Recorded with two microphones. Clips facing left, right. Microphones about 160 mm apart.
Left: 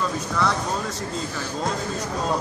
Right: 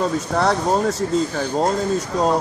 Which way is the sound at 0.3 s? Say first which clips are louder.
Right 6 dB; 60° right (ahead or behind).